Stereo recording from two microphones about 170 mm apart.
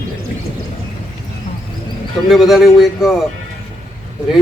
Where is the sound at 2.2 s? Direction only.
Centre (ahead or behind).